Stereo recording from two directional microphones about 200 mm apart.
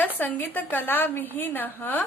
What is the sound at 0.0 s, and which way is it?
A woman's voice, 10° left (ahead or behind).